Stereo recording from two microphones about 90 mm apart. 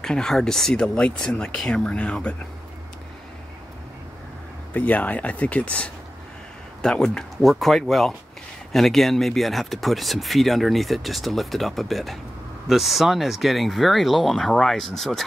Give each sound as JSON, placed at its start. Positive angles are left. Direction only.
{"t": 0.0, "sound": "speech", "side_deg": 5}
{"t": 4.7, "sound": "speech", "side_deg": 15}